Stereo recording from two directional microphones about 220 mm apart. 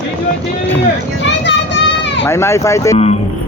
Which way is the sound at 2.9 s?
25° left (ahead or behind).